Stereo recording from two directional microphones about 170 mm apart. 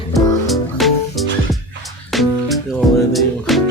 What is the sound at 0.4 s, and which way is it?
Music, centre (ahead or behind).